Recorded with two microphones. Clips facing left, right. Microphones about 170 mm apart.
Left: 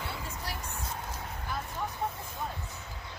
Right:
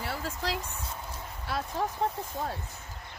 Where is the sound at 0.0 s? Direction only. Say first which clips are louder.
Right 5 dB; 90° right.